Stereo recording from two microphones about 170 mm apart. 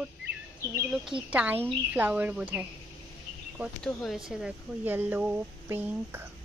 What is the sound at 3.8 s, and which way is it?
Speech, centre (ahead or behind).